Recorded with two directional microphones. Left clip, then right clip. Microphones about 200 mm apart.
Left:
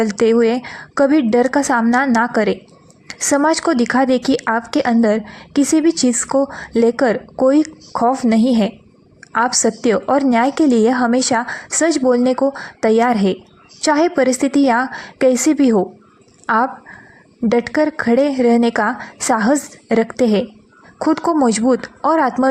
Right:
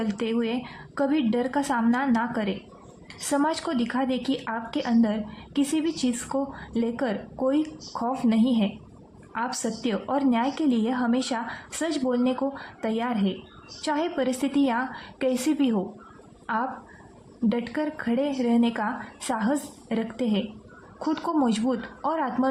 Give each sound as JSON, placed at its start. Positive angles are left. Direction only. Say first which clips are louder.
{"t": 0.0, "sound": "a woman's voice", "louder": "left 15 dB", "side_deg": 40}